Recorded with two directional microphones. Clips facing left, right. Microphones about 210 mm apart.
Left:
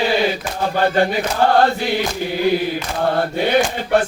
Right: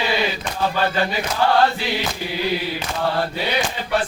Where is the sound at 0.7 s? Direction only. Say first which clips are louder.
Left 8 dB; 50° left (ahead or behind).